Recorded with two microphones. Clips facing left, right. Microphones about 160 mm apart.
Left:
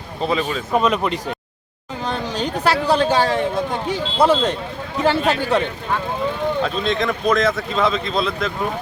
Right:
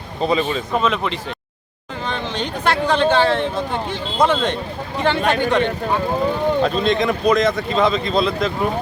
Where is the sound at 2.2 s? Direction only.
35° left (ahead or behind).